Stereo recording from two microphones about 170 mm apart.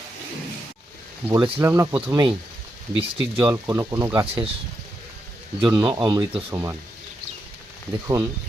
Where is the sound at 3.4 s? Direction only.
15° right (ahead or behind).